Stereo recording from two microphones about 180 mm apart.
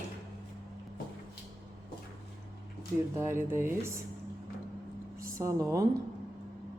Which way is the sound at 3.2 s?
15° right (ahead or behind).